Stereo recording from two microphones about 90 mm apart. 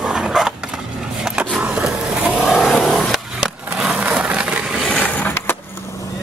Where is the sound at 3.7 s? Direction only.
10° right (ahead or behind).